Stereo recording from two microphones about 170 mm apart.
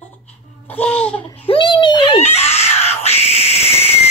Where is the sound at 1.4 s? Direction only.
30° left (ahead or behind).